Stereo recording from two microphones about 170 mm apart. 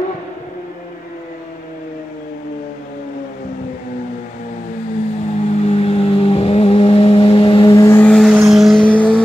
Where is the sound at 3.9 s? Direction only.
50° left (ahead or behind); by 8.1 s 15° left (ahead or behind).